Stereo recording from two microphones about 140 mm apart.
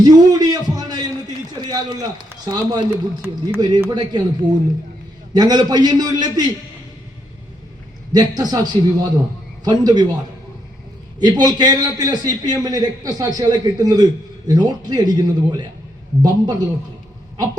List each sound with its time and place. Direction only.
0.0 s a sound: 30° right (ahead or behind)
1.6 s a man's voice: 30° right (ahead or behind)
2.9 s a man's voice: 15° right (ahead or behind)
3.8 s a man's voice: 30° right (ahead or behind)
8.1 s a man's voice: 30° right (ahead or behind)
11.2 s a man's voice: 30° right (ahead or behind)